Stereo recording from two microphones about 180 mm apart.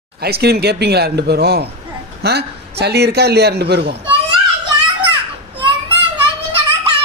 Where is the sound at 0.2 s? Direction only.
60° right (ahead or behind).